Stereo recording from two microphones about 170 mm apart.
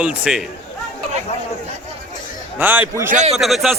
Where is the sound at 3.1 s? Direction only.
45° right (ahead or behind).